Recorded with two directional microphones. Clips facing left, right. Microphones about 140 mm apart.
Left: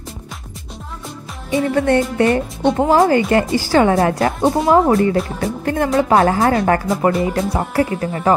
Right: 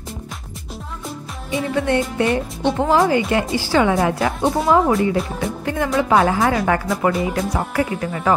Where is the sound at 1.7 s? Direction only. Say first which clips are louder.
Left 3 dB; 45° left (ahead or behind).